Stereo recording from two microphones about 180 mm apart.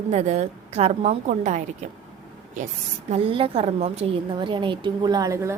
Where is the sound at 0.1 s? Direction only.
40° right (ahead or behind).